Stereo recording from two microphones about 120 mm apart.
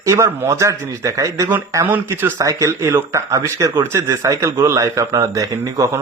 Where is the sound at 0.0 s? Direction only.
25° right (ahead or behind).